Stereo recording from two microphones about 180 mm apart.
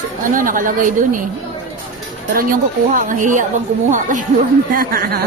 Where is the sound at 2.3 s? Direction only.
45° right (ahead or behind).